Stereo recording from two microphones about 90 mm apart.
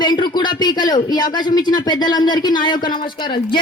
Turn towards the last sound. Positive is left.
turn(degrees=65)  # may be behind; listen again after turning